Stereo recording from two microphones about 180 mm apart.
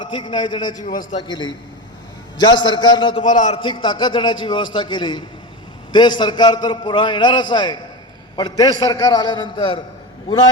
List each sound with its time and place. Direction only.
0.0 s a man's voice: 25° left (ahead or behind)
3.2 s a man's voice: 45° left (ahead or behind)
3.6 s a man's voice: 25° left (ahead or behind)